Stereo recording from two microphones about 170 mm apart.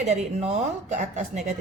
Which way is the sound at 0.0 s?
40° right (ahead or behind).